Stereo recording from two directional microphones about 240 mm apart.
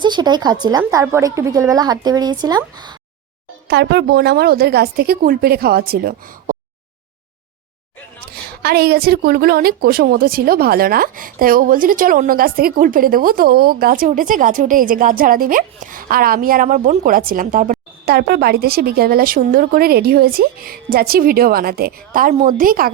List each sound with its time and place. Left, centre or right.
0.0 s a woman's voice: centre
3.7 s a woman's voice: right
8.3 s a woman's voice: right